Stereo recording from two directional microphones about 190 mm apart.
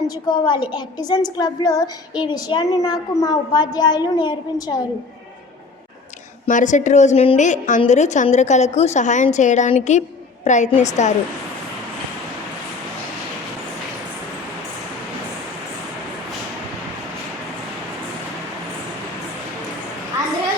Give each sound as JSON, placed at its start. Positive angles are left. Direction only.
{"t": 0.3, "sound": "a woman's voice", "side_deg": 25}
{"t": 6.4, "sound": "a woman's voice", "side_deg": 40}